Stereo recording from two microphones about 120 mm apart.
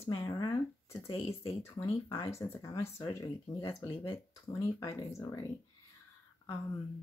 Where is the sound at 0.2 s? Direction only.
35° left (ahead or behind).